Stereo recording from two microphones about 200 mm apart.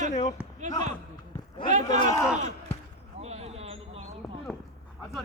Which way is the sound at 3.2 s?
30° right (ahead or behind).